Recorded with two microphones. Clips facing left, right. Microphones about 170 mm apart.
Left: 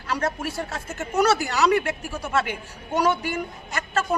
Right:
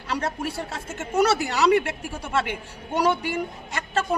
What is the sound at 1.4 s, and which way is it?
A man's voice, 25° right (ahead or behind).